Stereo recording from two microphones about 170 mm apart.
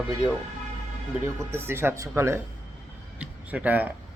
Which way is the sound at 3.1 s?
10° right (ahead or behind).